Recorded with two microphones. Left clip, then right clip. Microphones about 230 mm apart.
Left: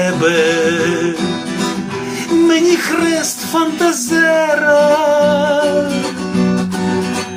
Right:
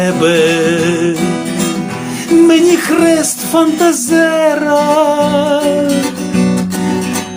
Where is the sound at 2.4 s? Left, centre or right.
Right.